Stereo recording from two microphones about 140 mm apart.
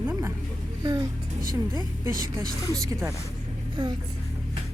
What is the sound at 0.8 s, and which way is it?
Speech, 25° right (ahead or behind).